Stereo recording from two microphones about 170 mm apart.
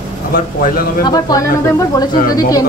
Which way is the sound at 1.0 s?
20° left (ahead or behind).